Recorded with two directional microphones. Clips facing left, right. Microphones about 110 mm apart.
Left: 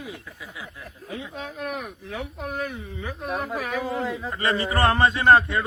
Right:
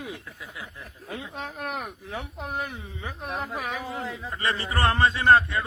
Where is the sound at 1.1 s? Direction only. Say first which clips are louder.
Left 1 dB; 45° right (ahead or behind).